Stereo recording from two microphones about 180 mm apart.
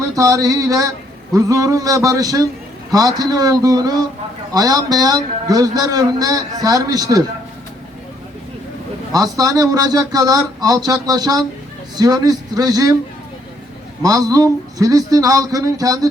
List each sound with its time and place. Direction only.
0.2 s a man's voice: 20° right (ahead or behind)
9.1 s a man's voice: 20° right (ahead or behind)
14.0 s a man's voice: 20° right (ahead or behind)